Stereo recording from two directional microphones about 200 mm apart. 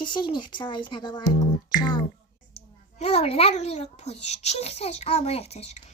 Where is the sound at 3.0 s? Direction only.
30° left (ahead or behind).